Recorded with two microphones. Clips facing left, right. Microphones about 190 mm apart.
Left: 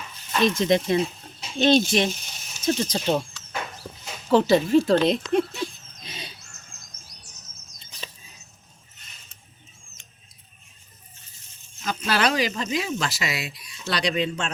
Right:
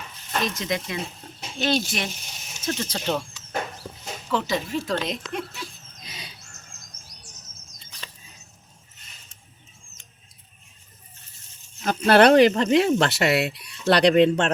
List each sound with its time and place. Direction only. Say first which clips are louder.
0.4 s speech: left 10 dB; 25° left (ahead or behind)
4.3 s speech: left 8 dB; 30° left (ahead or behind)
6.0 s bird: left 3 dB; 25° left (ahead or behind)
7.1 s chirp: right 1 dB; 45° right (ahead or behind)
7.8 s bird flight: left 3 dB; 15° left (ahead or behind)
11.9 s speech: right 9 dB; 55° right (ahead or behind)